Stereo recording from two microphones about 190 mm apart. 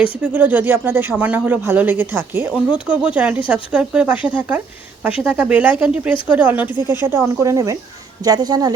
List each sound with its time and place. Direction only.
0.3 s speech: 10° right (ahead or behind)